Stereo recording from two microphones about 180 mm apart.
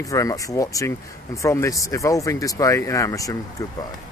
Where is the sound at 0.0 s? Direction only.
20° left (ahead or behind).